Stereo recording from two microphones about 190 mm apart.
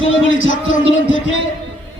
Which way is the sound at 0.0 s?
90° left.